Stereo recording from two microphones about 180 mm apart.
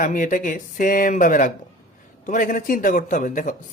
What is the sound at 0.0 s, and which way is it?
Speech, 50° left (ahead or behind).